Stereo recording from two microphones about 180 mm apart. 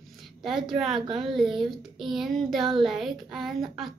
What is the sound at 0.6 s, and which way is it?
Speech, centre (ahead or behind).